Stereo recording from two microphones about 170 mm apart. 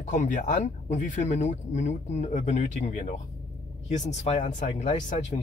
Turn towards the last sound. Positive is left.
turn(degrees=45)  # may be behind; listen again after turning